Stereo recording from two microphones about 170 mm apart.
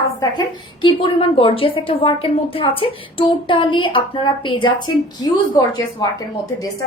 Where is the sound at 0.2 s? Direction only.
25° left (ahead or behind).